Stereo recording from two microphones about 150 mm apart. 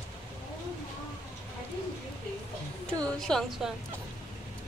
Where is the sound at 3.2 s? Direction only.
5° left (ahead or behind).